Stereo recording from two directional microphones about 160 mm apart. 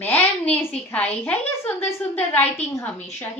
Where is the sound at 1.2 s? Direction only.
10° left (ahead or behind).